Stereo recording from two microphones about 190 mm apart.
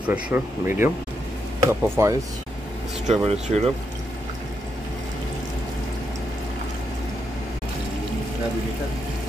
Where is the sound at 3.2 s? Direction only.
35° right (ahead or behind).